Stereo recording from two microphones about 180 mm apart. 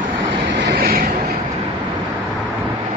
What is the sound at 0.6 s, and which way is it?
Vehicle, 65° right (ahead or behind).